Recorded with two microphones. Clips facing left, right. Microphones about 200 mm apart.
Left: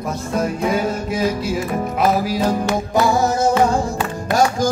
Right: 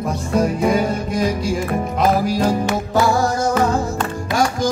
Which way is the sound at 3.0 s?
20° left (ahead or behind).